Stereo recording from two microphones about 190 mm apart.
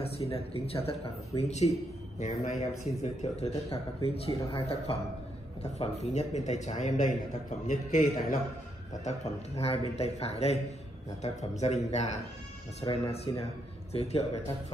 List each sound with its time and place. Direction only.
0.3 s a man's voice: 30° left (ahead or behind)